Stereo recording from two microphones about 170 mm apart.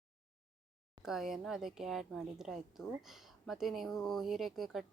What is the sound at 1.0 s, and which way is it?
Speech, centre (ahead or behind).